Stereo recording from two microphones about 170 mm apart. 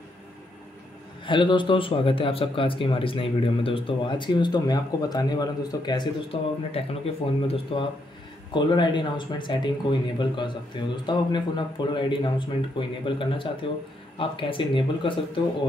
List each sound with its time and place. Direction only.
1.2 s speech: 30° left (ahead or behind)